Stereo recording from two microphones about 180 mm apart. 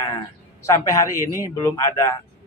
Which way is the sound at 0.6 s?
15° left (ahead or behind).